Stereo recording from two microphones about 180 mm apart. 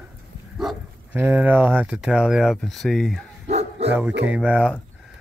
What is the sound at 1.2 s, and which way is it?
Speech, 10° right (ahead or behind).